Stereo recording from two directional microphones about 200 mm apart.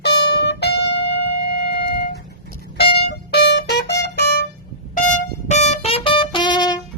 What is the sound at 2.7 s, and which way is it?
Music, 55° left (ahead or behind).